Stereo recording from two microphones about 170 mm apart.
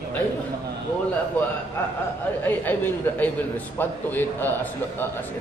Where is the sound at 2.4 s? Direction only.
10° left (ahead or behind).